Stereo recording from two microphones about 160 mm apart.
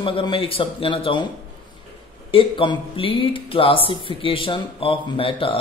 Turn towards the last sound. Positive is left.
turn(degrees=35)  # may be behind; listen again after turning